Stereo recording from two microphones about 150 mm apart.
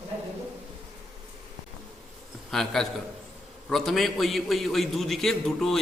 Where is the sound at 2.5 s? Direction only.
Centre (ahead or behind).